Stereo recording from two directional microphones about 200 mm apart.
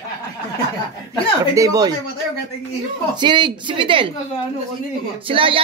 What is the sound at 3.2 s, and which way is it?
Speech, 25° right (ahead or behind).